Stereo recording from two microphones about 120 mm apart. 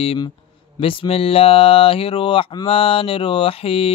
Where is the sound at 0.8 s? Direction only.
50° left (ahead or behind).